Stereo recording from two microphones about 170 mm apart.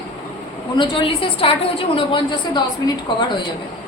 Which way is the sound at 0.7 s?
30° left (ahead or behind).